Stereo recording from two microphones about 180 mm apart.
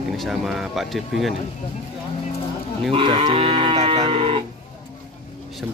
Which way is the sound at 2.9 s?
30° right (ahead or behind).